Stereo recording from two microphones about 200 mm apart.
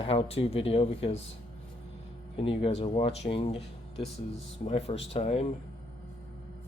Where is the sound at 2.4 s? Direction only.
25° left (ahead or behind).